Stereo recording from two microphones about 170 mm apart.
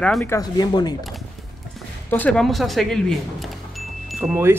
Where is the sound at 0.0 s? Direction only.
10° left (ahead or behind).